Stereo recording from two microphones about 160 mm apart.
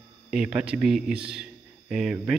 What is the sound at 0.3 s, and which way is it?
Speech, 5° right (ahead or behind).